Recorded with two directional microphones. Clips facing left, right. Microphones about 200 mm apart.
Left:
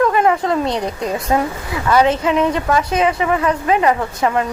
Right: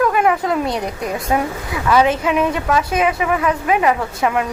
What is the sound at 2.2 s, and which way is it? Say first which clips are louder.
A woman's voice: left 1 dB; 10° right (ahead or behind).